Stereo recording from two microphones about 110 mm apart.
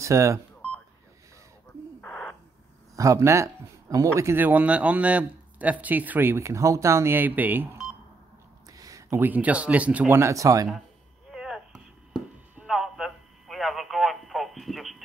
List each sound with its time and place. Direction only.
0.0 s speech: 25° right (ahead or behind)
2.0 s owl: 5° left (ahead or behind)
3.0 s a man's voice: 30° right (ahead or behind)
8.7 s a sound: 30° right (ahead or behind)
9.2 s a man's voice: 15° right (ahead or behind); by 10.7 s 30° right (ahead or behind)
11.3 s chop: 5° right (ahead or behind)
12.6 s a sound: centre (ahead or behind)